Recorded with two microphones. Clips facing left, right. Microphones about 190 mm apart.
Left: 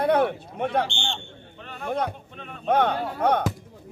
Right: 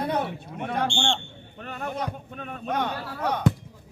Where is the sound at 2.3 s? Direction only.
45° right (ahead or behind).